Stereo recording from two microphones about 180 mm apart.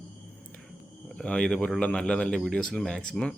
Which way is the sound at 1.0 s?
5° left (ahead or behind).